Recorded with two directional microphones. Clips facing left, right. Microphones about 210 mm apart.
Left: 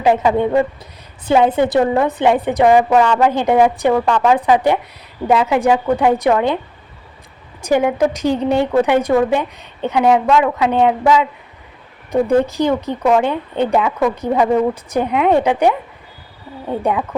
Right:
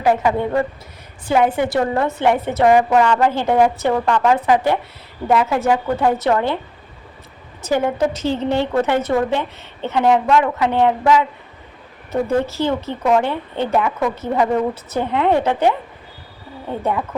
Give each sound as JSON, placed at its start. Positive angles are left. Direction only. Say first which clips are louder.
{"t": 0.0, "sound": "a woman's voice", "louder": "left 3 dB", "side_deg": 20}
{"t": 7.6, "sound": "a woman's voice", "louder": "left 3 dB", "side_deg": 15}